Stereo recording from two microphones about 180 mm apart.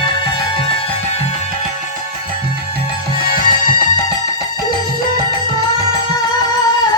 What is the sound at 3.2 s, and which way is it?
Music, 50° left (ahead or behind).